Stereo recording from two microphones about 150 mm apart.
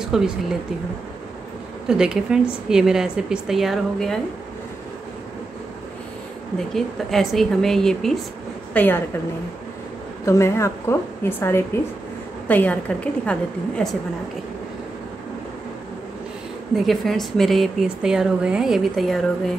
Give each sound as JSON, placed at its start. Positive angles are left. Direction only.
{"t": 0.0, "sound": "speech", "side_deg": -5}
{"t": 1.9, "sound": "speech", "side_deg": -5}
{"t": 6.7, "sound": "a woman's voice", "side_deg": 0}
{"t": 10.2, "sound": "a woman's voice", "side_deg": 20}
{"t": 16.7, "sound": "speech", "side_deg": 0}